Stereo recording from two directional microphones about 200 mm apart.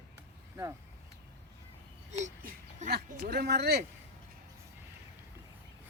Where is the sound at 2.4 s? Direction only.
50° right (ahead or behind).